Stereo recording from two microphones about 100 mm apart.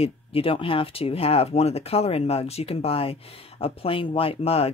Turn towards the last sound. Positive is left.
turn(degrees=80)